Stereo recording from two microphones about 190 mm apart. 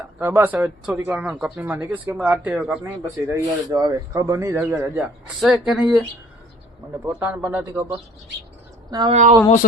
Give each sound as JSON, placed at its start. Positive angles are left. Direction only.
{"t": 0.2, "sound": "speech", "side_deg": -10}
{"t": 7.0, "sound": "speech", "side_deg": -10}
{"t": 8.9, "sound": "speech", "side_deg": -20}